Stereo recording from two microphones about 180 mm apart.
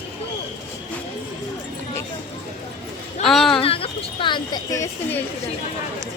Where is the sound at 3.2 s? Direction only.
Centre (ahead or behind).